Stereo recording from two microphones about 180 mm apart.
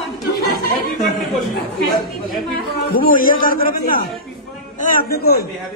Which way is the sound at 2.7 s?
55° left (ahead or behind).